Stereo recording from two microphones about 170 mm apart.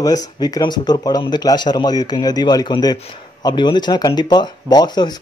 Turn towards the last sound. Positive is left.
turn(degrees=25)  # may be behind; listen again after turning